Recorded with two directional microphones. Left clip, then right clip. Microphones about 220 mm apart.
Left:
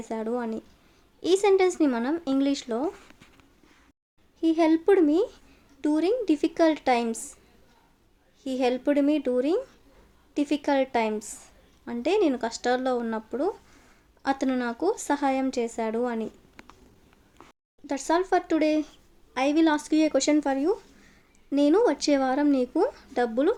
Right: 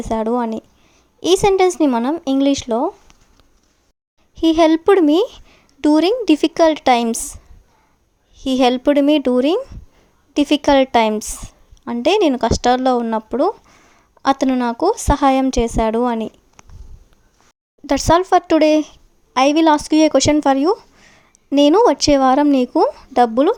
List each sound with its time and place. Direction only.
0.0 s speech: 35° right (ahead or behind)
4.4 s speech: 40° right (ahead or behind)
8.4 s speech: 40° right (ahead or behind)
17.8 s speech: 40° right (ahead or behind)